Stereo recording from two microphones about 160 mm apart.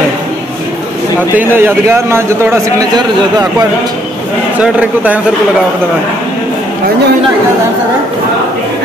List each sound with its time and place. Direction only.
1.6 s a man's voice: 15° right (ahead or behind)
4.6 s a man's voice: 10° right (ahead or behind)